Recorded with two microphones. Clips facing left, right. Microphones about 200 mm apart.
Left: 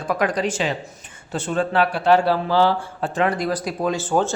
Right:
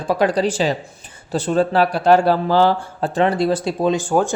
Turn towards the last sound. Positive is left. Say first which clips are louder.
# right 2 dB
turn(degrees=-15)  # may be behind; listen again after turning